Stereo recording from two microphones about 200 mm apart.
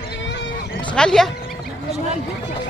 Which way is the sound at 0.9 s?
5° left (ahead or behind).